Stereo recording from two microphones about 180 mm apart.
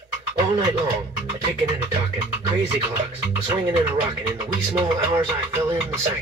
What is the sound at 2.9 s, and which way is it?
Speech, 30° right (ahead or behind).